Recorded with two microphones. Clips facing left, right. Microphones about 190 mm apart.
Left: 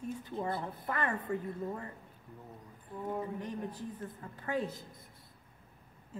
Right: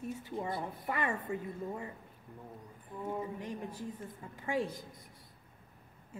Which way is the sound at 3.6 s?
10° right (ahead or behind).